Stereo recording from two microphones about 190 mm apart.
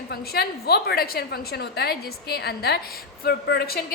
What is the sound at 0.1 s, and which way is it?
A woman's voice, 55° left (ahead or behind).